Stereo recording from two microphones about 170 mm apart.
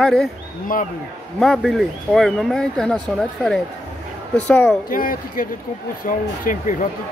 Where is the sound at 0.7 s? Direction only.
55° left (ahead or behind).